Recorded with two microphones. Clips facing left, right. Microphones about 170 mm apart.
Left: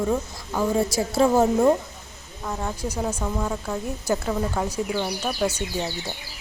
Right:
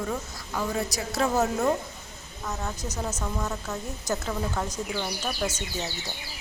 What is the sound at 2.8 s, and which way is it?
A woman's voice, 10° left (ahead or behind).